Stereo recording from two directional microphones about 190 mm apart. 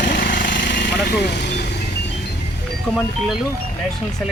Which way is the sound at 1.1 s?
60° left (ahead or behind).